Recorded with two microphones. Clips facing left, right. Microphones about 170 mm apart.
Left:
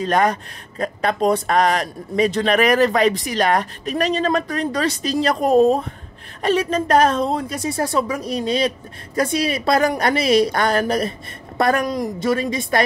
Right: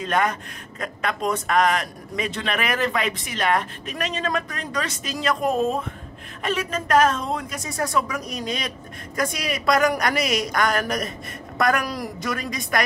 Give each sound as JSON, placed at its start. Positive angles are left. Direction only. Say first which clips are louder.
{"t": 0.0, "sound": "a woman's voice", "louder": "left 5 dB", "side_deg": 35}